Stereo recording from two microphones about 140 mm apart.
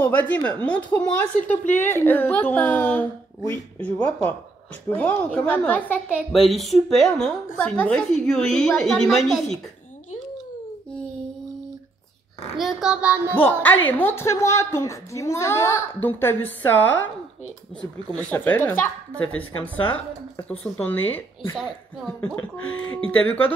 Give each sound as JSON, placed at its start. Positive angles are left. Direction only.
{"t": 0.0, "sound": "a woman's voice", "side_deg": 10}
{"t": 12.5, "sound": "a woman's voice", "side_deg": -5}
{"t": 13.3, "sound": "a woman's voice", "side_deg": 15}
{"t": 18.1, "sound": "a woman's voice", "side_deg": 10}